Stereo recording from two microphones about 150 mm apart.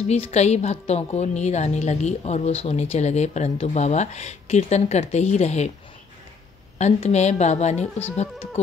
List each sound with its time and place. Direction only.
0.0 s a woman's voice: 40° left (ahead or behind)
6.8 s a woman's voice: 45° left (ahead or behind)